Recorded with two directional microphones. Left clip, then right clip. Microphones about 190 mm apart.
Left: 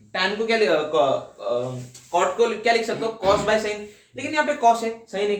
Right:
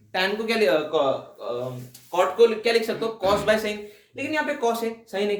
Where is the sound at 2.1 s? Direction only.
35° right (ahead or behind).